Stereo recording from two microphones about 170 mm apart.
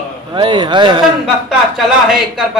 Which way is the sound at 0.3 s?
25° right (ahead or behind).